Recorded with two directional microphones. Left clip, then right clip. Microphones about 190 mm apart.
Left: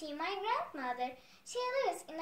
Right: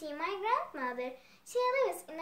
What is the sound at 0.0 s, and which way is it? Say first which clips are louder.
A woman's voice: right 2 dB; 25° right (ahead or behind).